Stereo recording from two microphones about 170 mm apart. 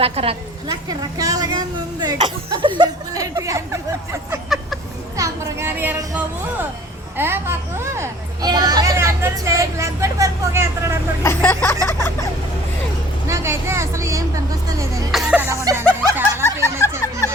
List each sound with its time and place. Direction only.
0.0 s a woman's voice: 35° right (ahead or behind)
0.7 s speech: 20° right (ahead or behind)
4.4 s a sound: centre (ahead or behind)
5.1 s speech: 15° right (ahead or behind)
11.2 s speech: 15° left (ahead or behind)
13.2 s speech: 15° right (ahead or behind)
15.1 s speech: 5° right (ahead or behind)
15.6 s snicker: 15° right (ahead or behind)